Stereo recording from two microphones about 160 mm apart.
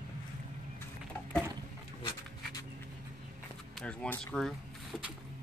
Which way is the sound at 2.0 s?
30° left (ahead or behind).